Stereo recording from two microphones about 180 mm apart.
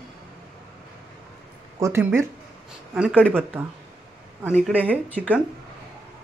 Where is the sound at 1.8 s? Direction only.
15° right (ahead or behind).